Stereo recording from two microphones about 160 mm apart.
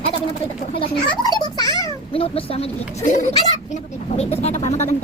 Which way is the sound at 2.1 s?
35° left (ahead or behind).